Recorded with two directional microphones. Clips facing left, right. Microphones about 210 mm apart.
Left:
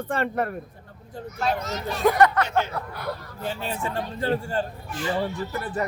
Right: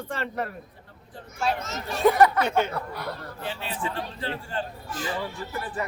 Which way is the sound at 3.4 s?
45° left (ahead or behind).